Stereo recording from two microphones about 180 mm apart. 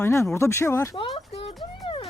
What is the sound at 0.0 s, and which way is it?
Speech, 15° left (ahead or behind).